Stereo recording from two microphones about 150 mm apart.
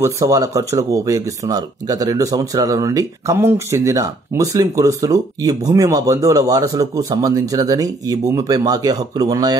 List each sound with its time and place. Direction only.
0.0 s speech: 20° right (ahead or behind)